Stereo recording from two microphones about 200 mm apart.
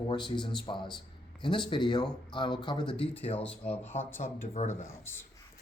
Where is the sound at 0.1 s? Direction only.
25° left (ahead or behind).